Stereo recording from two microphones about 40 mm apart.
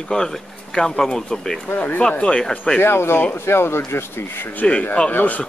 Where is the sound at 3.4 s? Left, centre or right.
Left.